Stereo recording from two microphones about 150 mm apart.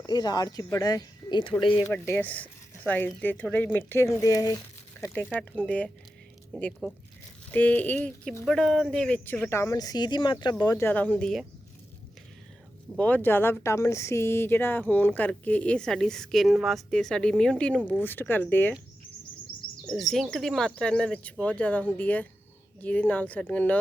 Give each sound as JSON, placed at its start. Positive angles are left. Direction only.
{"t": 0.0, "sound": "speech", "side_deg": 25}
{"t": 1.9, "sound": "speech", "side_deg": 15}
{"t": 13.0, "sound": "speech", "side_deg": 10}
{"t": 20.0, "sound": "speech", "side_deg": 0}